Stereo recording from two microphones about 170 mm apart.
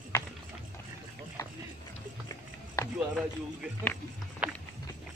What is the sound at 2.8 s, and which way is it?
Run, 20° left (ahead or behind).